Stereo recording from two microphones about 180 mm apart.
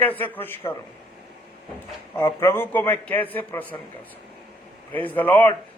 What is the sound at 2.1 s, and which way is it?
A man's voice, 15° left (ahead or behind).